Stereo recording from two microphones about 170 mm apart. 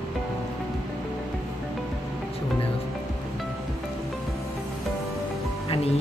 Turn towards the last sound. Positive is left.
turn(degrees=35)  # may be behind; listen again after turning